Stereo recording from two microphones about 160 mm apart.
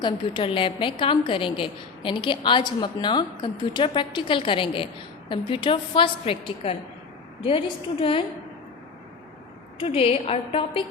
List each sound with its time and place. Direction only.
0.0 s a woman's voice: 30° left (ahead or behind)
9.8 s a woman's voice: 40° left (ahead or behind)